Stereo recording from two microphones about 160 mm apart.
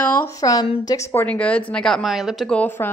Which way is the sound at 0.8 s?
20° left (ahead or behind).